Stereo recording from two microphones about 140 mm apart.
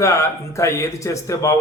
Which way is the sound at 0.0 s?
20° left (ahead or behind).